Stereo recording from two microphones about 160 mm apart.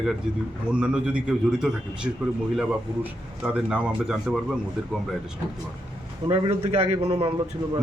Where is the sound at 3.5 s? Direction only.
5° right (ahead or behind).